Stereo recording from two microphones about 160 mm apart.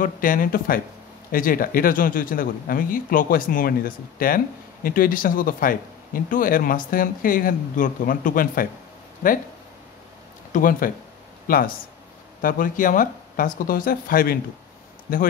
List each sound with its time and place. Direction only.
0.0 s speech: 60° left (ahead or behind)
10.5 s speech: 60° left (ahead or behind)